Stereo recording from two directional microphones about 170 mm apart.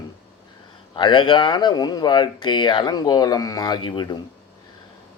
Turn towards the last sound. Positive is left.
turn(degrees=25)  # may be behind; listen again after turning